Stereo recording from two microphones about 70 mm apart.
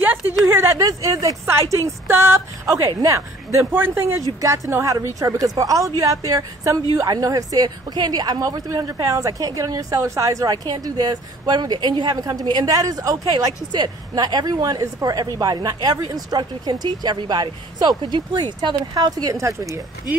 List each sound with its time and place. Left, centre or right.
0.0 s a sound: right
0.5 s speech: right
0.7 s a woman's voice: right
1.4 s a woman's voice: right
3.7 s a woman's voice: right
4.4 s speech: right
5.0 s a woman's voice: right
12.6 s a woman's voice: right
13.3 s a woman's voice: right
19.3 s speech: right